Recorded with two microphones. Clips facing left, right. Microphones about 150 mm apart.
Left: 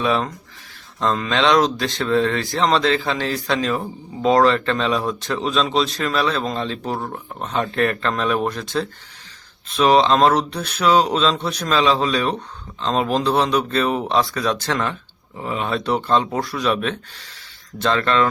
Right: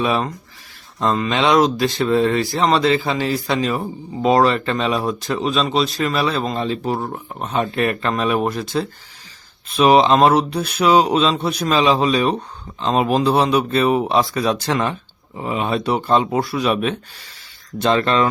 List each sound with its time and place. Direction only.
0.0 s speech: 10° right (ahead or behind)